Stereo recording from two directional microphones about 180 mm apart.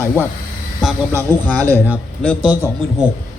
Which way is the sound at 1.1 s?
15° right (ahead or behind).